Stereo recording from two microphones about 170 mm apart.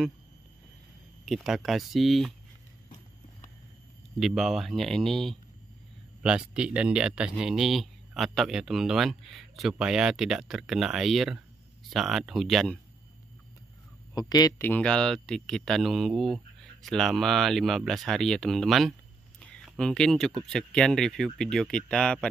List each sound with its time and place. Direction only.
1.2 s speech: centre (ahead or behind)
4.2 s speech: centre (ahead or behind)
14.1 s speech: 20° left (ahead or behind)
14.6 s speech: 10° left (ahead or behind)
19.4 s a sound: 5° left (ahead or behind)
20.4 s speech: 5° left (ahead or behind)